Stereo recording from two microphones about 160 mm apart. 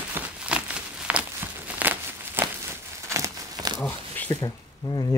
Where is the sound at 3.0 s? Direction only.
20° right (ahead or behind).